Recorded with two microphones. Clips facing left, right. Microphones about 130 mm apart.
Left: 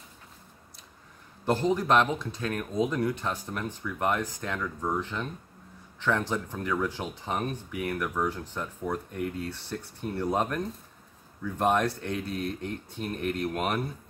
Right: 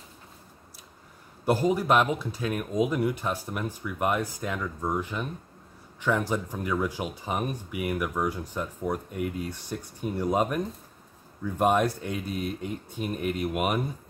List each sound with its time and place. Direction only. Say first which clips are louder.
1.4 s speech: right 2 dB; 10° right (ahead or behind)